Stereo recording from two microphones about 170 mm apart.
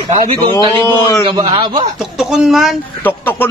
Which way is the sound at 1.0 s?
25° left (ahead or behind).